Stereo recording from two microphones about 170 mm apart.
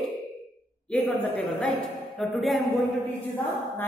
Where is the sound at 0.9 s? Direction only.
10° left (ahead or behind).